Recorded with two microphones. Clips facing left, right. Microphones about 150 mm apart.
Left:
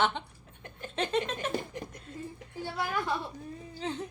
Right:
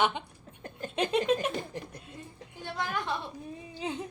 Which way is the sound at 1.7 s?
30° right (ahead or behind).